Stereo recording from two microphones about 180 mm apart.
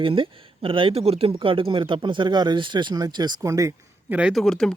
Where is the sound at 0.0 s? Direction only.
30° right (ahead or behind).